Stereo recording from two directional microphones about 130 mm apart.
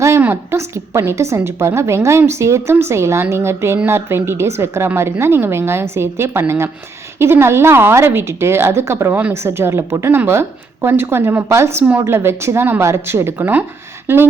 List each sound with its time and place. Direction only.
0.0 s a woman's voice: 20° right (ahead or behind)